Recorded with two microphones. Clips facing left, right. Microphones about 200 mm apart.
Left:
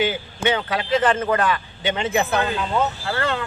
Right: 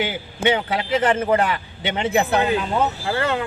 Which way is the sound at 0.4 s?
25° right (ahead or behind).